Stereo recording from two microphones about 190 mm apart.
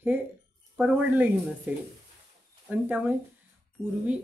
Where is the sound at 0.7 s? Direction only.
5° right (ahead or behind).